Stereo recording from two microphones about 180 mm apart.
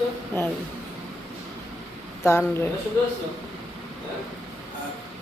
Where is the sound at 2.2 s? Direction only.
15° left (ahead or behind).